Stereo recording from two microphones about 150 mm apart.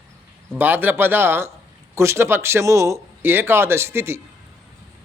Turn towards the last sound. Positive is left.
turn(degrees=-15)  # may be behind; listen again after turning